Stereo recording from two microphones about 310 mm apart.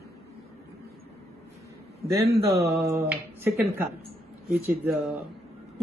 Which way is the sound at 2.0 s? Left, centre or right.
Centre.